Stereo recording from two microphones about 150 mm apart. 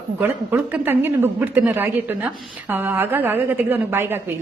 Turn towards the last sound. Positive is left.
turn(degrees=-15)  # may be behind; listen again after turning